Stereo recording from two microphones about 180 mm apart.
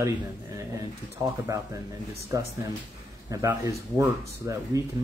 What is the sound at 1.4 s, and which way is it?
Speech, 15° right (ahead or behind).